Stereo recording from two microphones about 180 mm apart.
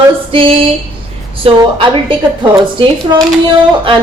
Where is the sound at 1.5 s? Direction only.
30° right (ahead or behind).